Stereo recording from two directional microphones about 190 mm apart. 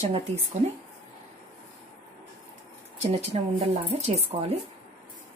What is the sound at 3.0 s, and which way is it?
A woman's voice, 35° right (ahead or behind).